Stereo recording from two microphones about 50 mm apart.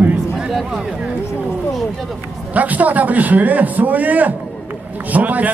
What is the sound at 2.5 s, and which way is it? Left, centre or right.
A man's voice, right.